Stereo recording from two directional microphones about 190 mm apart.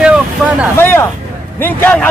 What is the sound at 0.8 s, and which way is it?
Speech, 10° left (ahead or behind).